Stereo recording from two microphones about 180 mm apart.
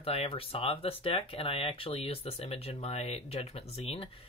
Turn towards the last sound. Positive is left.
turn(degrees=30)  # may be behind; listen again after turning